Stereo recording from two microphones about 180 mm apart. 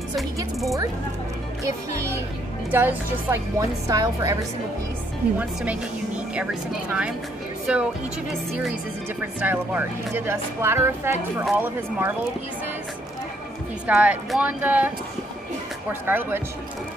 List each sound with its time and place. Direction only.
1.6 s a woman's voice: 15° right (ahead or behind)
5.4 s speech: 5° right (ahead or behind)
7.7 s speech: 5° right (ahead or behind)
9.2 s speech: 10° right (ahead or behind)
13.8 s speech: 5° right (ahead or behind)
15.9 s speech: 10° right (ahead or behind)